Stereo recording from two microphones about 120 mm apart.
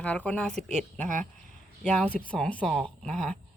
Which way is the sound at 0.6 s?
70° right (ahead or behind).